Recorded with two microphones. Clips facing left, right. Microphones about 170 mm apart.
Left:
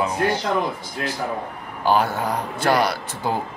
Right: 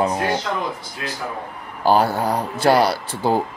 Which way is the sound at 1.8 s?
35° right (ahead or behind).